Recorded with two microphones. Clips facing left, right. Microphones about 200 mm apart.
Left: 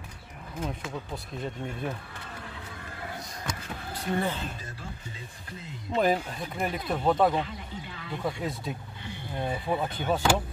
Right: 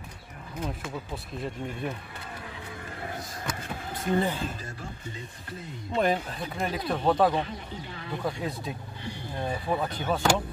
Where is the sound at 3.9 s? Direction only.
20° right (ahead or behind).